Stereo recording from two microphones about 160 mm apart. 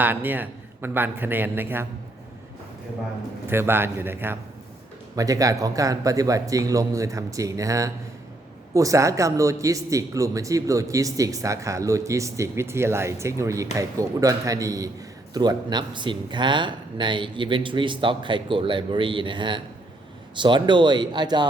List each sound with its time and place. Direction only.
0.0 s a man's voice: 10° right (ahead or behind)
3.4 s a man's voice: 15° right (ahead or behind)